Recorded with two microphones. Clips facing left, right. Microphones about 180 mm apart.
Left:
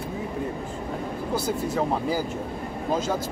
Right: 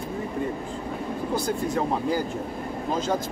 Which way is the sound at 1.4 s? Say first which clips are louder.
Left 1 dB; 5° left (ahead or behind).